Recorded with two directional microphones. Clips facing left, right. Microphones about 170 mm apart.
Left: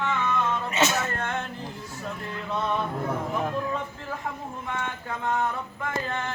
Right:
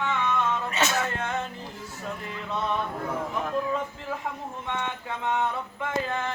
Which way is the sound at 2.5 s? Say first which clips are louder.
Left 1 dB; centre (ahead or behind).